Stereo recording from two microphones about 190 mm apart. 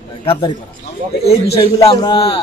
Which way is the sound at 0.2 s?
30° left (ahead or behind).